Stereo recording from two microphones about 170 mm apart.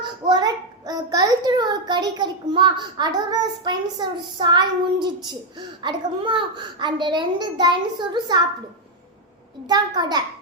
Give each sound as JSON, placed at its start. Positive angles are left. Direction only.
{"t": 0.0, "sound": "a child's voice", "side_deg": -25}
{"t": 9.6, "sound": "a child's voice", "side_deg": -25}